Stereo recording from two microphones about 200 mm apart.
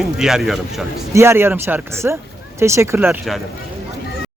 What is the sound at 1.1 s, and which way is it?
Speech, 10° right (ahead or behind).